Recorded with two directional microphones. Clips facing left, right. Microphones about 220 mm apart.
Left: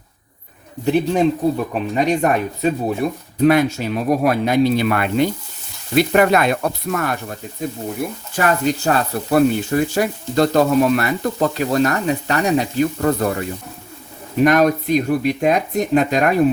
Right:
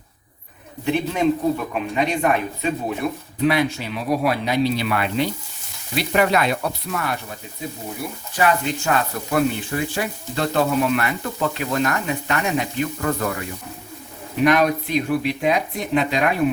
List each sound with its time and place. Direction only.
0.9 s speech: 35° left (ahead or behind)